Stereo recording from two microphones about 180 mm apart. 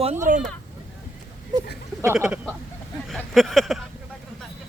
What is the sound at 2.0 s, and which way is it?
Speech, 10° right (ahead or behind).